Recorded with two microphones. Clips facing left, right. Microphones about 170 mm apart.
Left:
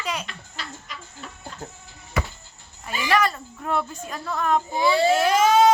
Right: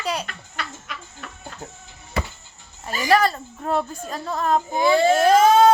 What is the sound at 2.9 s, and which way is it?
Speech, 40° right (ahead or behind).